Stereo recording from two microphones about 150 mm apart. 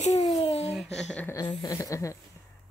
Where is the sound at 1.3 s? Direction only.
25° left (ahead or behind).